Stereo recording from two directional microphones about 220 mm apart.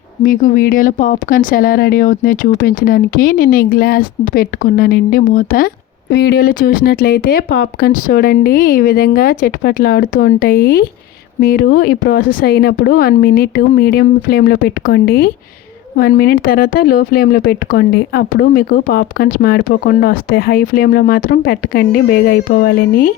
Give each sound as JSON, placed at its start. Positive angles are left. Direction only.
{"t": 0.2, "sound": "speech", "side_deg": 40}